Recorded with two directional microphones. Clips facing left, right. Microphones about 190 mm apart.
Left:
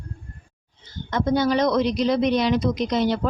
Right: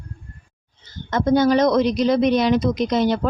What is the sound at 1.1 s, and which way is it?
A woman's voice, 45° right (ahead or behind).